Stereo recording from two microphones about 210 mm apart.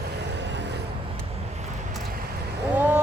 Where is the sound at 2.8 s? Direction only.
10° right (ahead or behind).